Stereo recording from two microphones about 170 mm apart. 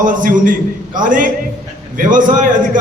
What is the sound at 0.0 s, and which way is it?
A man's voice, 50° right (ahead or behind).